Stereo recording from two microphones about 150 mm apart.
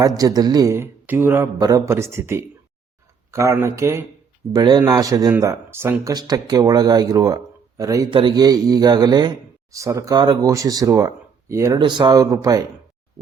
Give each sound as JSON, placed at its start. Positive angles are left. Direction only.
{"t": 0.2, "sound": "a man's voice", "side_deg": -25}
{"t": 4.5, "sound": "a man's voice", "side_deg": -30}